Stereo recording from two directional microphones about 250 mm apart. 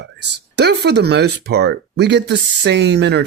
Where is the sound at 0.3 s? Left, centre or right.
Right.